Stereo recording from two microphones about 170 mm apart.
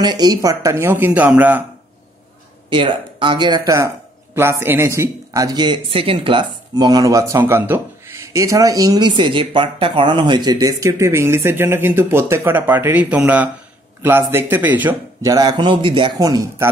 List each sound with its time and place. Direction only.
0.0 s speech: 25° right (ahead or behind)
2.7 s speech: 30° right (ahead or behind); by 15.3 s 10° right (ahead or behind)
15.3 s speech: 25° right (ahead or behind)